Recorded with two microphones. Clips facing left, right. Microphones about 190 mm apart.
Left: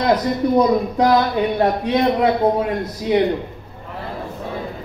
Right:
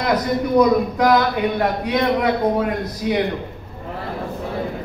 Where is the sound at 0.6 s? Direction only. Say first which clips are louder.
Right 2 dB; 30° left (ahead or behind).